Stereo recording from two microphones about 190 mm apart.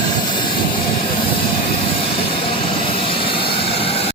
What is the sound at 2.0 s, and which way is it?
Vehicle, 25° left (ahead or behind).